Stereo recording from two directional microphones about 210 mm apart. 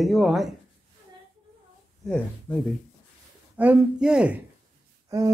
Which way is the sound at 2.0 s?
5° left (ahead or behind).